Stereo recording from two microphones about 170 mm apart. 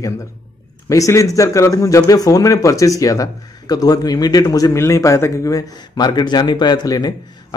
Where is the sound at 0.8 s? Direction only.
20° left (ahead or behind).